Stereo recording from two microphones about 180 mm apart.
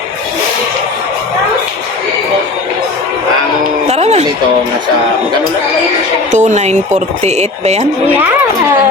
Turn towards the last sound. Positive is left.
turn(degrees=-40)  # may be behind; listen again after turning